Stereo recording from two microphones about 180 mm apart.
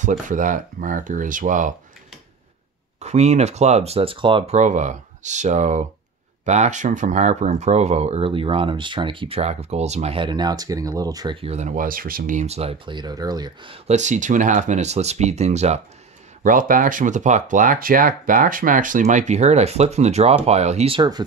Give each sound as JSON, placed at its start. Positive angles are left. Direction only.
{"t": 0.0, "sound": "speech", "side_deg": -45}
{"t": 3.0, "sound": "speech", "side_deg": -40}
{"t": 4.6, "sound": "speech", "side_deg": -40}
{"t": 11.4, "sound": "speech", "side_deg": -40}
{"t": 13.8, "sound": "speech", "side_deg": -40}
{"t": 16.4, "sound": "speech", "side_deg": -50}